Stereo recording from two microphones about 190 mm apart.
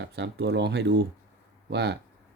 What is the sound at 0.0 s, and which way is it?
Speech, 60° right (ahead or behind).